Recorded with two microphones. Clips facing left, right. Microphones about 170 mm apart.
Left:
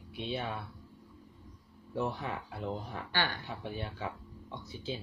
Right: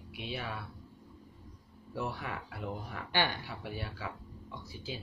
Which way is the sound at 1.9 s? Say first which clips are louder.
Left 3 dB; 20° left (ahead or behind).